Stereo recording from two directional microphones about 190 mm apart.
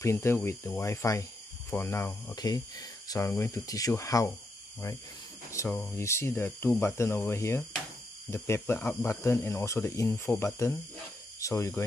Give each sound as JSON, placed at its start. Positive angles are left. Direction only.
{"t": 0.0, "sound": "speech", "side_deg": 15}